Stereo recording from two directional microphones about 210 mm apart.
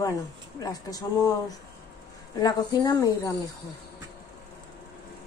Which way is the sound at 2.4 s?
20° left (ahead or behind).